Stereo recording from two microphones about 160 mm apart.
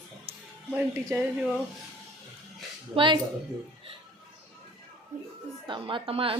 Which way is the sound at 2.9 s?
30° right (ahead or behind).